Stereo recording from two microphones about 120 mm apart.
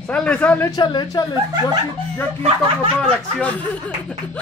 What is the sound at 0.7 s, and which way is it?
Speech, 35° left (ahead or behind).